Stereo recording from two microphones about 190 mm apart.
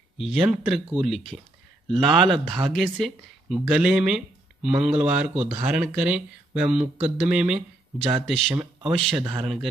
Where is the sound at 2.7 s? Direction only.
Centre (ahead or behind).